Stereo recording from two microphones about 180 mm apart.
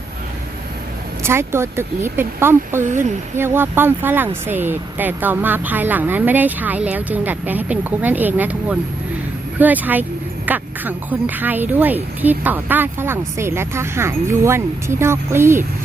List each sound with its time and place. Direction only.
1.2 s speech: 15° right (ahead or behind)
2.8 s speech: 45° right (ahead or behind)
3.3 s speech: 10° right (ahead or behind)